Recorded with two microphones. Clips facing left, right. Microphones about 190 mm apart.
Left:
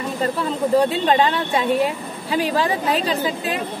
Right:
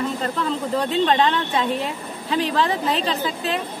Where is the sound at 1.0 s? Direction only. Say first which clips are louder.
Left 1 dB; 10° left (ahead or behind).